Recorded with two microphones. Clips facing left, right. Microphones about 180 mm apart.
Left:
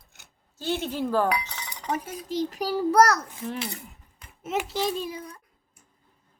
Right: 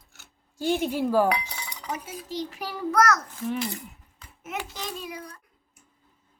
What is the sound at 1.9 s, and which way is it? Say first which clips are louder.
A child's voice: left 5 dB; 50° left (ahead or behind).